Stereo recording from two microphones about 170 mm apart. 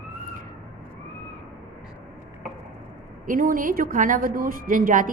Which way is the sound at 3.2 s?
55° right (ahead or behind).